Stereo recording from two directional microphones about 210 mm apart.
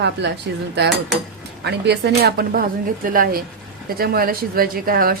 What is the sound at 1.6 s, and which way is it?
Speech, 50° right (ahead or behind).